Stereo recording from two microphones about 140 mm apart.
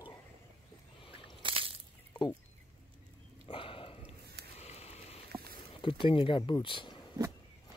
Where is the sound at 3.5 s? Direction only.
40° left (ahead or behind).